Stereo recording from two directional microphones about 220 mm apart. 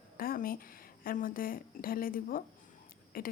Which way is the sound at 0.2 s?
40° left (ahead or behind).